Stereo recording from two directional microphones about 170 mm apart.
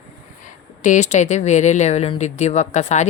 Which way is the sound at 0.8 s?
45° left (ahead or behind).